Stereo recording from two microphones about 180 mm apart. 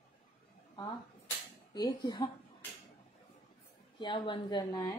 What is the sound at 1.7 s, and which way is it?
Speech, 25° left (ahead or behind).